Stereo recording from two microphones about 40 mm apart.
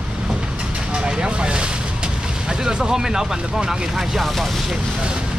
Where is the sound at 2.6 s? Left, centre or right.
Centre.